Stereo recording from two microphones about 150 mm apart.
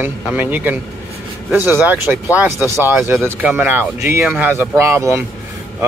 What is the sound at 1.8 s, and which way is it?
Speech, 15° right (ahead or behind).